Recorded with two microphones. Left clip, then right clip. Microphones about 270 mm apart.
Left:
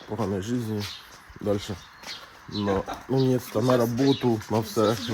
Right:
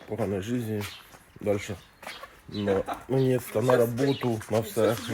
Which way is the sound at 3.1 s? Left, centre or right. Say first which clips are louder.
Left 1 dB; centre.